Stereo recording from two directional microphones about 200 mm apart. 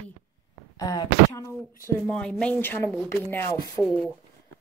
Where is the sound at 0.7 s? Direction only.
20° left (ahead or behind).